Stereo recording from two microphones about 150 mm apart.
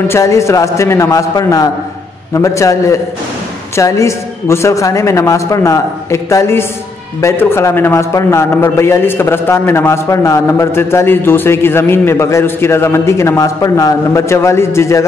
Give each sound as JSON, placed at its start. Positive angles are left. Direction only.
{"t": 0.1, "sound": "a man's voice", "side_deg": 20}